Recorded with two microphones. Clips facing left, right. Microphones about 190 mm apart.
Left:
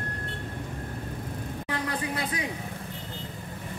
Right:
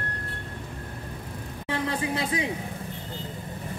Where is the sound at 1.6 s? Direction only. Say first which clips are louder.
Right 4 dB; 25° right (ahead or behind).